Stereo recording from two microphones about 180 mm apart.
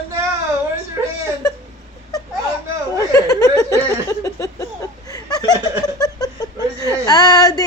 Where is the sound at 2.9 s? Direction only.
20° left (ahead or behind).